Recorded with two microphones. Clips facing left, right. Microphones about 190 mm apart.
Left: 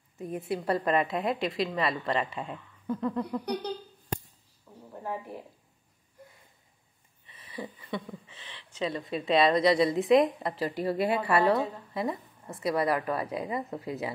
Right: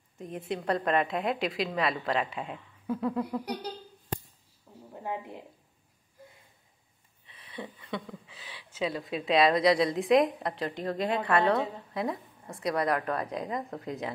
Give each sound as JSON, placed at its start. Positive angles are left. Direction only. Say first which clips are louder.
{"t": 0.2, "sound": "speech", "louder": "left 2 dB", "side_deg": 5}
{"t": 5.0, "sound": "a woman's voice", "louder": "even", "side_deg": -20}
{"t": 7.2, "sound": "speech", "louder": "left 2 dB", "side_deg": 0}